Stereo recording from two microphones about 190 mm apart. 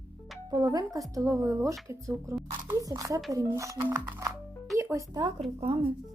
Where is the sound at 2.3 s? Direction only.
15° right (ahead or behind).